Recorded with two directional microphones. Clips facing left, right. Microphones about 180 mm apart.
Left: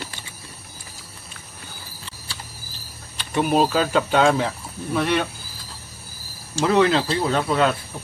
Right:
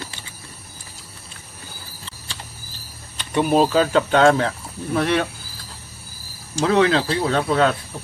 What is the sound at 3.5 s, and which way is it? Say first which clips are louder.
Speech: right 3 dB; 5° left (ahead or behind).